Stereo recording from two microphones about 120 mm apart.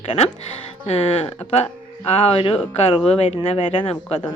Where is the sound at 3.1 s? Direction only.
60° left (ahead or behind); by 3.9 s 45° left (ahead or behind).